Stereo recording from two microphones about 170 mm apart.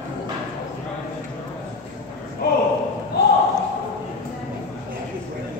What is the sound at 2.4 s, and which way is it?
Speech, 60° left (ahead or behind).